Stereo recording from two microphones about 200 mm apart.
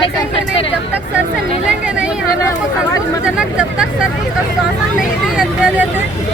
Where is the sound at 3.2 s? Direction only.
5° right (ahead or behind).